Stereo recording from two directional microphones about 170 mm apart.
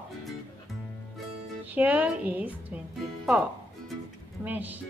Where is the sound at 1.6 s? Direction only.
10° right (ahead or behind).